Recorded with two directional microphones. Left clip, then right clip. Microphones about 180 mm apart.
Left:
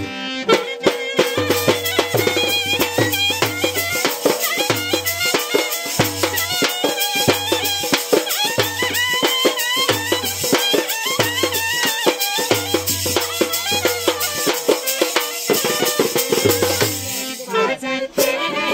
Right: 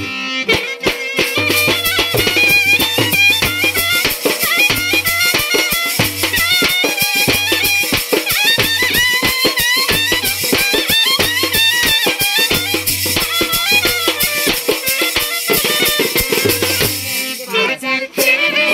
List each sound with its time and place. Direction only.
0.5 s music: 40° right (ahead or behind)